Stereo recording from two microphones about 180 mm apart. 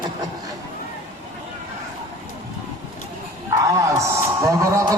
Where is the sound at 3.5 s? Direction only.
20° right (ahead or behind).